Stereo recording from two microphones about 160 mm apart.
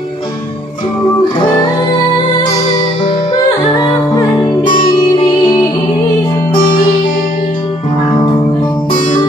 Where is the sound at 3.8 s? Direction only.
25° left (ahead or behind).